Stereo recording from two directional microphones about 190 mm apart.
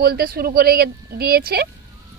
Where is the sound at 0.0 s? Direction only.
50° right (ahead or behind).